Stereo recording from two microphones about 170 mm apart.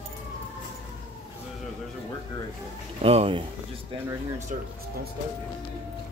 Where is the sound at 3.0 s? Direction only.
35° right (ahead or behind).